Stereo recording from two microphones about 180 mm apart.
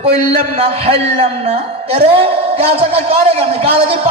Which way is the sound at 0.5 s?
35° right (ahead or behind).